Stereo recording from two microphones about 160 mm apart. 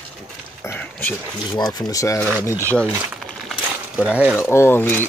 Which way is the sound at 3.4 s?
5° right (ahead or behind).